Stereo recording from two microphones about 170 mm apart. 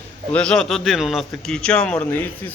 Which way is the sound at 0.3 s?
5° left (ahead or behind).